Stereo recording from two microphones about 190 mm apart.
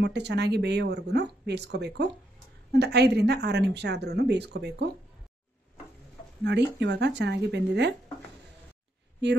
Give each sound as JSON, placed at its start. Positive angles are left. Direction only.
{"t": 0.0, "sound": "speech", "side_deg": -60}
{"t": 6.4, "sound": "speech", "side_deg": -65}